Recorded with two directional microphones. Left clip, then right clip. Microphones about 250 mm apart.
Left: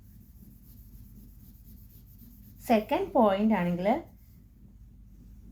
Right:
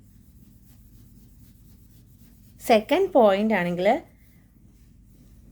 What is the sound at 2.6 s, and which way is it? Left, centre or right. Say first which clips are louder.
A woman's voice: right 7 dB; right.